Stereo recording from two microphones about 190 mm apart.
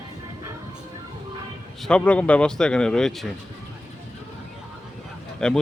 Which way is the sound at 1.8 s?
5° left (ahead or behind).